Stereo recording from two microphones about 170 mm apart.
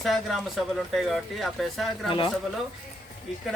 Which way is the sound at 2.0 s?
30° left (ahead or behind).